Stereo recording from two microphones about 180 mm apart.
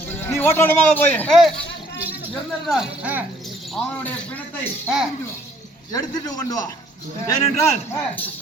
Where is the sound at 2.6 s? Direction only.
5° right (ahead or behind).